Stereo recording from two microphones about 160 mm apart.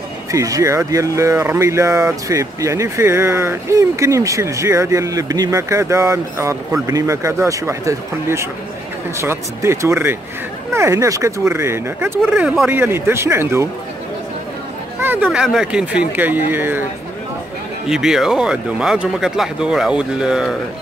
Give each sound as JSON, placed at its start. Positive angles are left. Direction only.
{"t": 0.3, "sound": "speech", "side_deg": -20}
{"t": 15.0, "sound": "speech", "side_deg": -10}
{"t": 17.8, "sound": "speech", "side_deg": -5}